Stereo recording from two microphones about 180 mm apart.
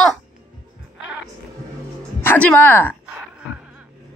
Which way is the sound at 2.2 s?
10° left (ahead or behind).